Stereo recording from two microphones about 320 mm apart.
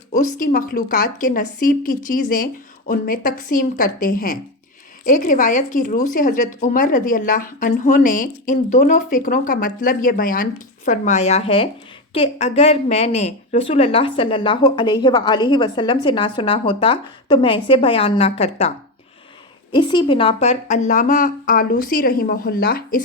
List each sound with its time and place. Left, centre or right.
0.2 s a woman's voice: left
19.7 s a woman's voice: centre